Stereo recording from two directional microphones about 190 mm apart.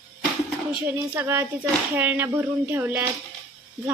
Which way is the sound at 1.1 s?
10° right (ahead or behind).